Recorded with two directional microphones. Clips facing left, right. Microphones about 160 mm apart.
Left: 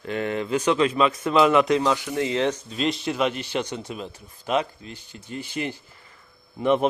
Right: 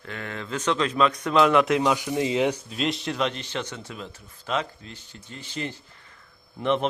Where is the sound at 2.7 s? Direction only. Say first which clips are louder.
Left 2 dB; centre (ahead or behind).